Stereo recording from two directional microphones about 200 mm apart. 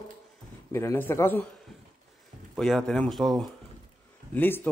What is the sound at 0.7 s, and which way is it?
Speech, 10° left (ahead or behind).